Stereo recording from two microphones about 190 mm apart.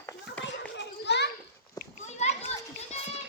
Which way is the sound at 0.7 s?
65° left (ahead or behind).